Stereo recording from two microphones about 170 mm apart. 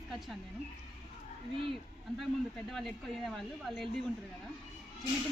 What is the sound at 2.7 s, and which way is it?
Speech, centre (ahead or behind).